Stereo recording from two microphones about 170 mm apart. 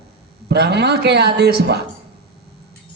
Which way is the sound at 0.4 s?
75° right (ahead or behind).